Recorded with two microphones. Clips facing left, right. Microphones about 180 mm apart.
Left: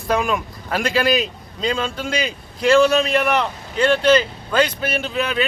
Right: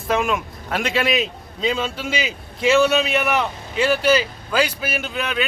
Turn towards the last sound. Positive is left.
turn(degrees=0)  # may be behind; listen again after turning